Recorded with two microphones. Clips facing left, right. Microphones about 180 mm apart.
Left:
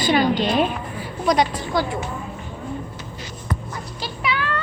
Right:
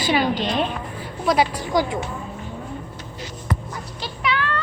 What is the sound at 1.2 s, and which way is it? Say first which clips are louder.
Speech: even; 5° right (ahead or behind).